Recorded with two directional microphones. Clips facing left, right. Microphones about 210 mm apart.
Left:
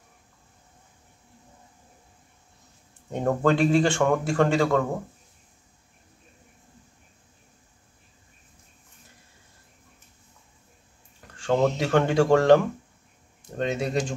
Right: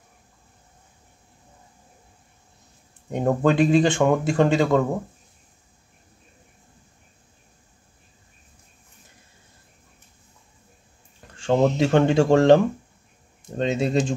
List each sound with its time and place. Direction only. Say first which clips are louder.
3.1 s speech: right 2 dB; 15° right (ahead or behind)
11.3 s speech: right 3 dB; 25° right (ahead or behind)